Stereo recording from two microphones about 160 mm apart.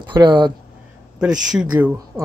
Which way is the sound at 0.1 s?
30° right (ahead or behind).